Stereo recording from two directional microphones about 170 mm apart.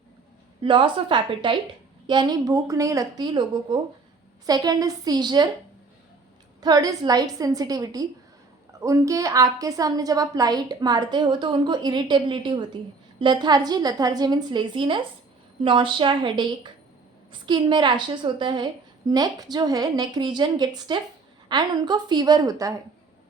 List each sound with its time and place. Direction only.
0.6 s a woman's voice: 30° right (ahead or behind)
6.6 s a woman's voice: 25° right (ahead or behind)